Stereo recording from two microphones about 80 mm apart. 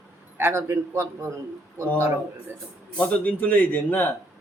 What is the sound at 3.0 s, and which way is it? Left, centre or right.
A man's voice, centre.